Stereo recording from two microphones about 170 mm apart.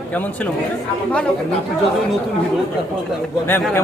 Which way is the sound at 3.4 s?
15° left (ahead or behind).